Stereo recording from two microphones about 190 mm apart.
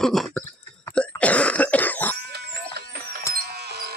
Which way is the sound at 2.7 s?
60° right (ahead or behind).